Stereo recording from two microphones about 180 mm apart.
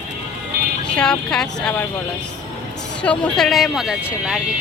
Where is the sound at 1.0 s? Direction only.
5° left (ahead or behind).